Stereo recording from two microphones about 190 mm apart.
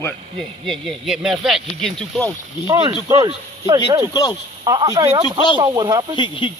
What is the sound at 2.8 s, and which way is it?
Speech, 20° right (ahead or behind).